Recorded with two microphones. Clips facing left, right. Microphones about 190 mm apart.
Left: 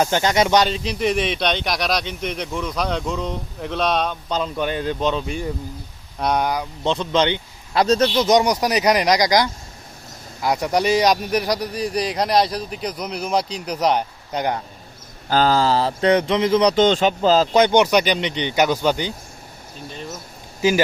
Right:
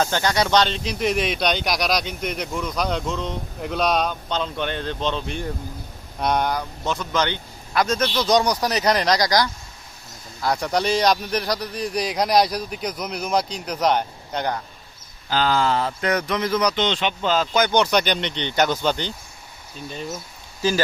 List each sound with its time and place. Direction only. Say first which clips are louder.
0.0 s speech: left 3 dB; 20° left (ahead or behind)
0.7 s speech: left 2 dB; centre (ahead or behind)
6.8 s speech: left 5 dB; 25° left (ahead or behind)
8.2 s speech: left 3 dB; 20° left (ahead or behind)
10.6 s speech: left 3 dB; 10° left (ahead or behind)
11.7 s speech: left 2 dB; centre (ahead or behind)
15.3 s speech: left 3 dB; 40° left (ahead or behind)
16.7 s speech: left 7 dB; 45° left (ahead or behind)
17.9 s speech: left 3 dB; 5° left (ahead or behind)
20.6 s speech: left 4 dB; 15° left (ahead or behind)